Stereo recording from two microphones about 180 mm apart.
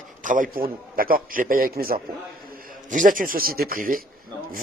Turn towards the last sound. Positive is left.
turn(degrees=-50)  # may be behind; listen again after turning